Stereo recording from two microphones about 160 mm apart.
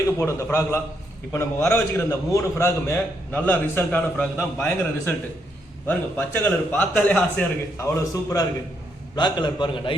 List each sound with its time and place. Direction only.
0.2 s a man's voice: 15° left (ahead or behind)
7.8 s a man's voice: 20° left (ahead or behind)